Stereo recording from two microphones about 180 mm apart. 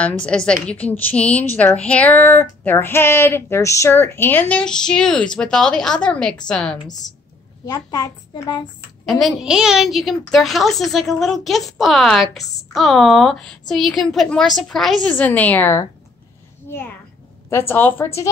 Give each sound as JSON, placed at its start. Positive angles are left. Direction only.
{"t": 0.2, "sound": "a woman's voice", "side_deg": 5}
{"t": 7.6, "sound": "a child's voice", "side_deg": 20}
{"t": 9.2, "sound": "a woman's voice", "side_deg": -5}
{"t": 17.5, "sound": "speech", "side_deg": 15}